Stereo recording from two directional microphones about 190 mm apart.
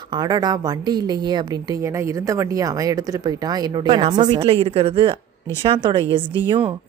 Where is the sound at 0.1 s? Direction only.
20° right (ahead or behind).